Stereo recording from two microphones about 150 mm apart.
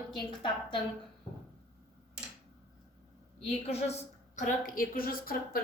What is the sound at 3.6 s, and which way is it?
A woman's voice, 45° left (ahead or behind).